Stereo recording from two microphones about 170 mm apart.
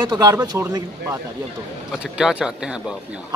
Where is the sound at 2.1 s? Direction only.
5° right (ahead or behind).